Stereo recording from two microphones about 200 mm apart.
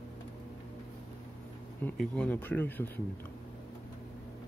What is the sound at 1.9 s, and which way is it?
Speech, 5° left (ahead or behind).